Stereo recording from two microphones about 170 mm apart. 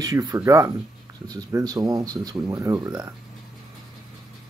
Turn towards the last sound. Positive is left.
turn(degrees=-15)  # may be behind; listen again after turning